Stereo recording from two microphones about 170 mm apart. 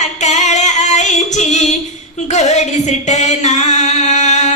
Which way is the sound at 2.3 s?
45° left (ahead or behind).